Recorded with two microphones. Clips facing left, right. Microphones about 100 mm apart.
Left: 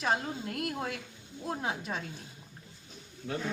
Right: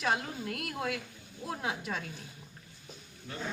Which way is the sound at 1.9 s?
20° left (ahead or behind).